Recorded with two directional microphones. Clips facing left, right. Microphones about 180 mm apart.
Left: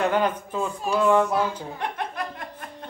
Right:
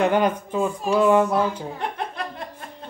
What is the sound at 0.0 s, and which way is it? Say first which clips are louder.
Speech: right 3 dB; 15° right (ahead or behind).